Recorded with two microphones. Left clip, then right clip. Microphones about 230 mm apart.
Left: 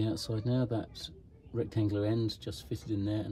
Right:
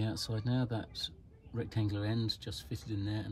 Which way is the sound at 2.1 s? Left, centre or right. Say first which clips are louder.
Left 3 dB; right.